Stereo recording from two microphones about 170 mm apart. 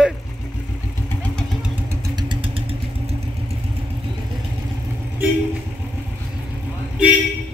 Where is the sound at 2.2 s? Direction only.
30° right (ahead or behind).